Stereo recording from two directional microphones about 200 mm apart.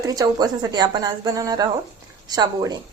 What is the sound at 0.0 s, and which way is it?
A woman's voice, 20° right (ahead or behind).